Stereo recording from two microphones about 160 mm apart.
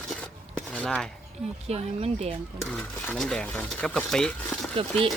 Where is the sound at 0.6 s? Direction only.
5° left (ahead or behind).